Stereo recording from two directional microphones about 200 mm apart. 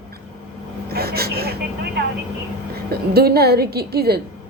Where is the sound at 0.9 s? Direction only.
50° right (ahead or behind).